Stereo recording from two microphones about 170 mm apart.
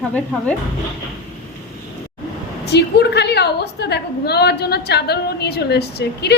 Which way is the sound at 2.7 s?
75° left (ahead or behind).